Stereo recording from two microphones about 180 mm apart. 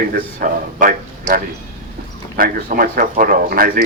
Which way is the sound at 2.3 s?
55° right (ahead or behind).